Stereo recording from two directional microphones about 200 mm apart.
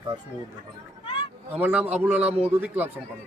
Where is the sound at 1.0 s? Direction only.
25° left (ahead or behind).